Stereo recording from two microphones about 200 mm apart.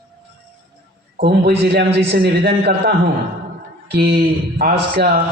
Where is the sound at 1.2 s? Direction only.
55° right (ahead or behind).